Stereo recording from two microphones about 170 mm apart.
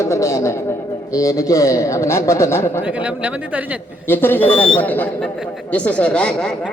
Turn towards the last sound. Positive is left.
turn(degrees=5)  # may be behind; listen again after turning